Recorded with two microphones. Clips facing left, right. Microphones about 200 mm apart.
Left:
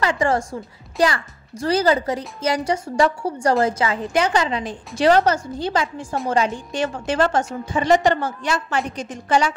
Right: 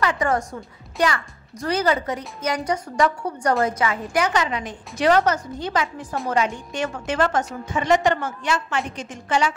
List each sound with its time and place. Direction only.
0.0 s a woman's voice: 30° left (ahead or behind)